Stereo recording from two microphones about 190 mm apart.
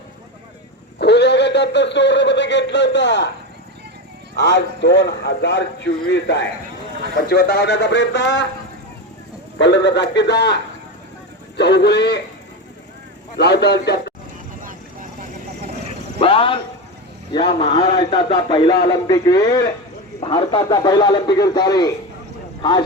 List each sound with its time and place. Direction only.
0.9 s speech: 60° left (ahead or behind)
4.4 s a man's voice: 65° left (ahead or behind)
7.1 s a man's voice: 55° left (ahead or behind)
9.6 s a man's voice: 65° left (ahead or behind)
13.3 s a man's voice: 60° left (ahead or behind)
16.1 s a sound: 30° left (ahead or behind)
17.3 s a man's voice: 25° left (ahead or behind)